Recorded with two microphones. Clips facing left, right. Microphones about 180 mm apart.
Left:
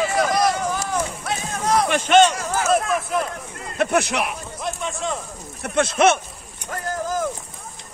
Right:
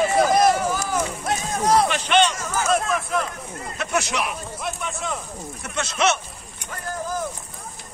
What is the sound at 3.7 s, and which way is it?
Speech, 55° left (ahead or behind).